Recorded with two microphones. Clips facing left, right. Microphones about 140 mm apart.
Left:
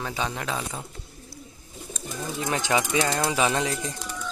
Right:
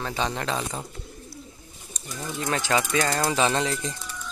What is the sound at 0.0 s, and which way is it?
Speech, 5° left (ahead or behind).